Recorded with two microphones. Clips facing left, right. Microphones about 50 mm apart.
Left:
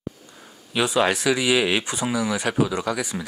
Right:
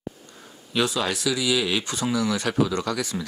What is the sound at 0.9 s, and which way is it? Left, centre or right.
Speech, left.